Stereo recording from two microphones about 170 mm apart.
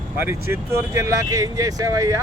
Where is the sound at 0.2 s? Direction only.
15° right (ahead or behind).